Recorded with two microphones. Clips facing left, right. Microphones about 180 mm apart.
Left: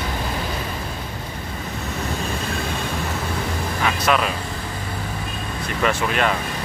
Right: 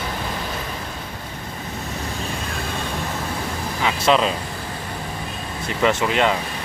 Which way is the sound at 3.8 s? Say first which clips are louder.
Right 3 dB; 25° right (ahead or behind).